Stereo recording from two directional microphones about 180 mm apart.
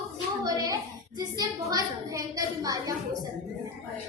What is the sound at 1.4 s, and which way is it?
A woman's voice, 20° right (ahead or behind).